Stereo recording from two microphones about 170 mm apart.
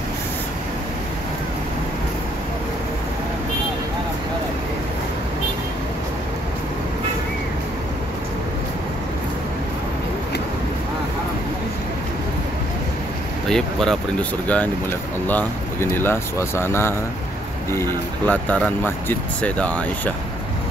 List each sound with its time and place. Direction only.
13.5 s speech: 5° left (ahead or behind)